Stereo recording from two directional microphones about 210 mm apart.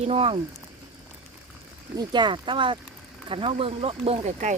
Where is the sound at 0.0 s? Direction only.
30° right (ahead or behind).